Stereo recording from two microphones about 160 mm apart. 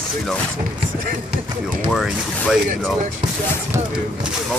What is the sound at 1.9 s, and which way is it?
Speech, centre (ahead or behind).